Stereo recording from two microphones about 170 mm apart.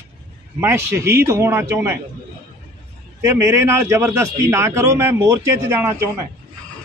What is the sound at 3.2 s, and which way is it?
A man's voice, 15° right (ahead or behind).